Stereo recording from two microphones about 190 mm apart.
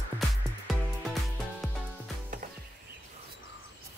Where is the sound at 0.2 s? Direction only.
Centre (ahead or behind).